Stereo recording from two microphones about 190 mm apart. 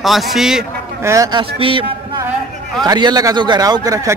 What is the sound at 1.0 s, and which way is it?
Speech, 15° right (ahead or behind).